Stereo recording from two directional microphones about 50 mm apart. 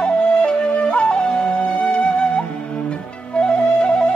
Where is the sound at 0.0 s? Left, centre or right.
Left.